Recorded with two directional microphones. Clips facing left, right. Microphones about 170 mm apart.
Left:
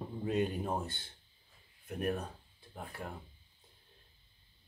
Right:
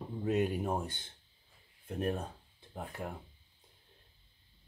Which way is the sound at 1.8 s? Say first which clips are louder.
Right 1 dB; 25° right (ahead or behind).